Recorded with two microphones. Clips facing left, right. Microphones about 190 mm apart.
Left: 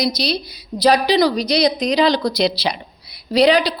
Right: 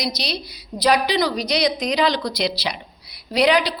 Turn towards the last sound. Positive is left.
turn(degrees=30)  # may be behind; listen again after turning